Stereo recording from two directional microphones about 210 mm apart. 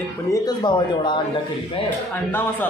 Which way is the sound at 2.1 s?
10° left (ahead or behind).